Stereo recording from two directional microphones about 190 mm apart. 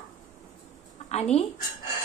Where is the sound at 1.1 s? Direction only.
35° left (ahead or behind).